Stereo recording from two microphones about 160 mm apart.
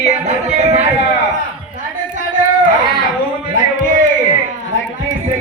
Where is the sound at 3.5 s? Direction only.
55° right (ahead or behind).